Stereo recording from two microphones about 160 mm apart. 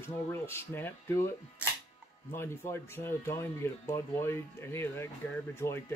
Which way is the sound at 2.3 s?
15° left (ahead or behind).